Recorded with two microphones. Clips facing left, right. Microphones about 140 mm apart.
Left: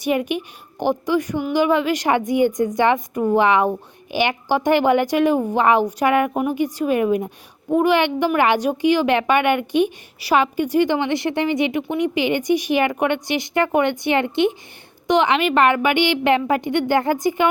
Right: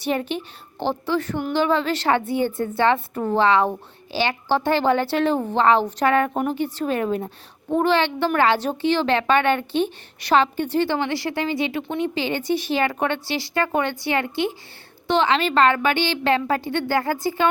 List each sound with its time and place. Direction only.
0.0 s speech: 15° left (ahead or behind)